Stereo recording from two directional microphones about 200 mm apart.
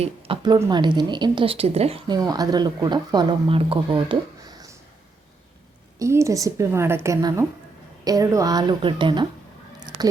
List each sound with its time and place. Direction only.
0.0 s speech: 25° right (ahead or behind)
2.1 s speech: 20° right (ahead or behind)
6.0 s a woman's voice: 15° right (ahead or behind)